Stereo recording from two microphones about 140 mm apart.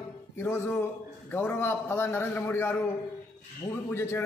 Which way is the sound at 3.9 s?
20° left (ahead or behind).